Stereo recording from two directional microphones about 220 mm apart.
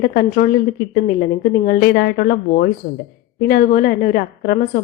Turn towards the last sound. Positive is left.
turn(degrees=40)  # may be behind; listen again after turning